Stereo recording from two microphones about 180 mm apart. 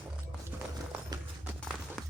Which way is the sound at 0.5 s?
10° right (ahead or behind).